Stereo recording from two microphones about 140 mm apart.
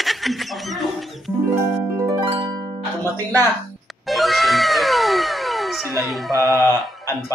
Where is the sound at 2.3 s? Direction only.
30° right (ahead or behind).